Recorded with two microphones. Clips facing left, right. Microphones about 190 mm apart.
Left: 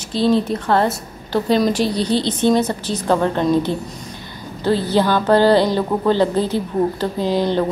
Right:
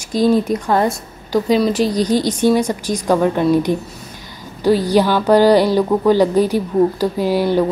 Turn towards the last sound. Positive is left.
turn(degrees=-10)  # may be behind; listen again after turning